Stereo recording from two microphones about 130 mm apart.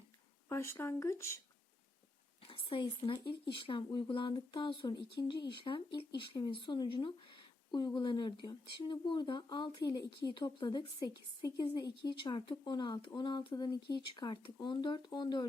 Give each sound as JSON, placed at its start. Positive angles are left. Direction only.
{"t": 0.4, "sound": "speech", "side_deg": 20}
{"t": 2.5, "sound": "a woman's voice", "side_deg": 40}